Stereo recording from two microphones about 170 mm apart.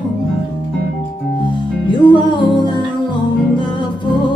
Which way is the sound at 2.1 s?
25° left (ahead or behind).